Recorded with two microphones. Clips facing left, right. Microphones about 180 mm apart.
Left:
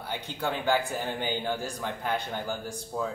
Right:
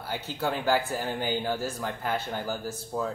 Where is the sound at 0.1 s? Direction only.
5° right (ahead or behind).